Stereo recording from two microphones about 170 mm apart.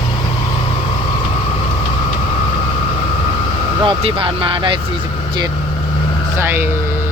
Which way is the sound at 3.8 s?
30° right (ahead or behind).